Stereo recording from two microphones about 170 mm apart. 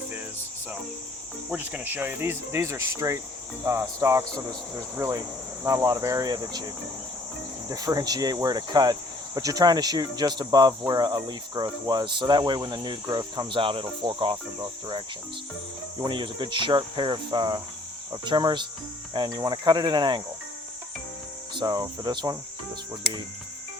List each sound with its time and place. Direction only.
1.5 s speech: 10° right (ahead or behind)
7.7 s speech: 20° right (ahead or behind)
21.5 s speech: 25° right (ahead or behind)